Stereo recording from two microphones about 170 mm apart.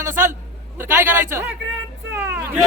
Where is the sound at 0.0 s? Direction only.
15° right (ahead or behind).